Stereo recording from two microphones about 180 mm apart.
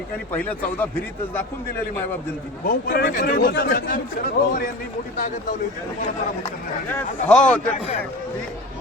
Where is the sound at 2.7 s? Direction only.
55° left (ahead or behind).